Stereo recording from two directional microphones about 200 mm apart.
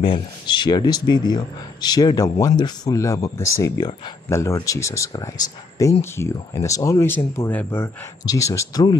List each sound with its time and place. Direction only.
0.0 s speech: 25° left (ahead or behind)